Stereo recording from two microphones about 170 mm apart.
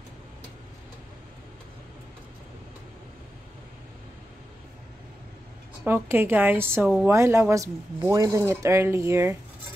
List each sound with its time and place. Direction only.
5.9 s speech: 15° right (ahead or behind)